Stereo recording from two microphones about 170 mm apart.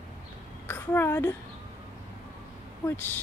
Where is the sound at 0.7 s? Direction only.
10° left (ahead or behind).